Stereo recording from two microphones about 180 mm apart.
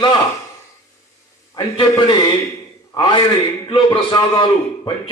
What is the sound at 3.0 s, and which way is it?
A man's voice, 25° left (ahead or behind).